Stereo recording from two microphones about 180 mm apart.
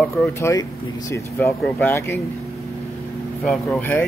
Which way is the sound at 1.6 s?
10° left (ahead or behind).